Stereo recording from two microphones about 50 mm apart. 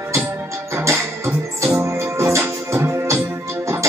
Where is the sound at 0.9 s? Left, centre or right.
Right.